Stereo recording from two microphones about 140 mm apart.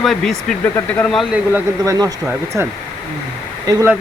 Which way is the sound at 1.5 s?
25° right (ahead or behind).